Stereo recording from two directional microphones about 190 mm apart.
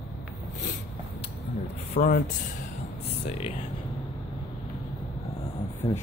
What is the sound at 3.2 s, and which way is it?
Speech, 30° left (ahead or behind).